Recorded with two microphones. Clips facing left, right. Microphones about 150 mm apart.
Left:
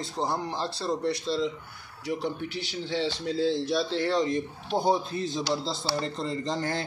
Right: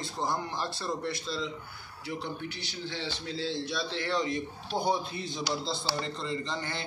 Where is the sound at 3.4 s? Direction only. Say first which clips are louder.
Left 8 dB; 45° left (ahead or behind).